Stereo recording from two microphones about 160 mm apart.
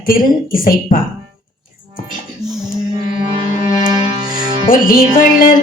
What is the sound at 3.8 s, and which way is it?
Music, 25° right (ahead or behind).